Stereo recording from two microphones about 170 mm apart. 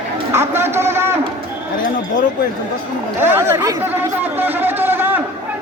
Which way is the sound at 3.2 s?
15° right (ahead or behind).